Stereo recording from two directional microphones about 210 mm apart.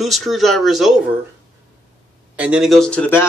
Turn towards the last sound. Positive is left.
turn(degrees=10)  # may be behind; listen again after turning